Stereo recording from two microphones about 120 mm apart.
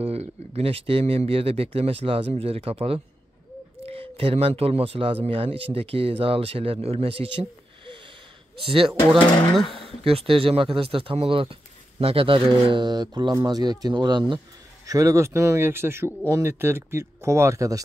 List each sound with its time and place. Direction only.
0.0 s speech: 60° right (ahead or behind); by 14.4 s 40° right (ahead or behind)
14.9 s speech: 30° right (ahead or behind)